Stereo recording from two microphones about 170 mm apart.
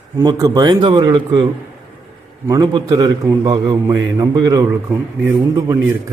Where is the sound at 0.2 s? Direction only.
20° right (ahead or behind).